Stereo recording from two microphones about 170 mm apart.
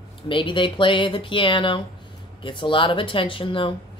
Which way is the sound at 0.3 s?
30° left (ahead or behind).